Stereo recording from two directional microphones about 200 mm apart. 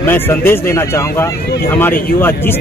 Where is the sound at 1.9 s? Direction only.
45° left (ahead or behind).